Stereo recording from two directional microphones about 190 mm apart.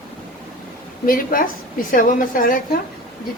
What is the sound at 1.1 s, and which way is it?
A woman's voice, 45° left (ahead or behind).